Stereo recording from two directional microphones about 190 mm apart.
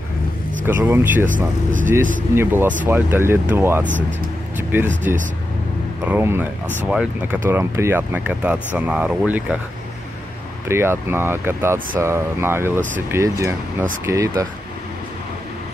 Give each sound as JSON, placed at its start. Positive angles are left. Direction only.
{"t": 0.7, "sound": "speech", "side_deg": -10}
{"t": 2.3, "sound": "speech", "side_deg": -10}
{"t": 5.1, "sound": "speech", "side_deg": -10}
{"t": 10.7, "sound": "speech", "side_deg": -15}